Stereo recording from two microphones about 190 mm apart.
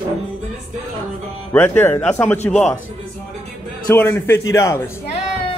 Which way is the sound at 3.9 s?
10° left (ahead or behind).